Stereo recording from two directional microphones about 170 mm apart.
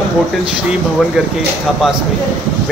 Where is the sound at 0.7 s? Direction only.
5° right (ahead or behind).